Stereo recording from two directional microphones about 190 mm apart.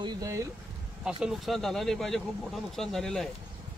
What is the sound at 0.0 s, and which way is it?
Speech, 15° right (ahead or behind).